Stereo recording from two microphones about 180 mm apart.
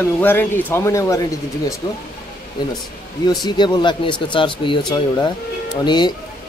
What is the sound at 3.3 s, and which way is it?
Speech, 25° left (ahead or behind).